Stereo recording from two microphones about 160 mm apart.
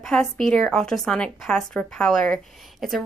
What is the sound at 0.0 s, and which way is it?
A woman's voice, 5° left (ahead or behind).